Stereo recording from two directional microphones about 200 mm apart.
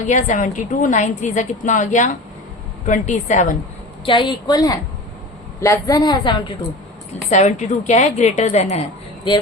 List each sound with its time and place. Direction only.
0.0 s a woman's voice: 40° left (ahead or behind)
4.0 s a woman's voice: 25° left (ahead or behind)
7.3 s a woman's voice: 35° left (ahead or behind)